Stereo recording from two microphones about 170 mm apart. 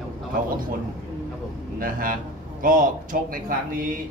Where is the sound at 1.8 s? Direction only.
55° right (ahead or behind).